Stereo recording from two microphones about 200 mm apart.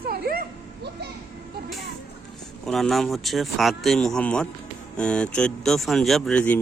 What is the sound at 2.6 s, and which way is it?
Speech, centre (ahead or behind).